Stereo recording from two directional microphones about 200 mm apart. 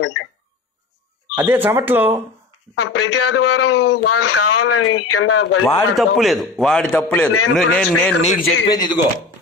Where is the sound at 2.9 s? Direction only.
90° left.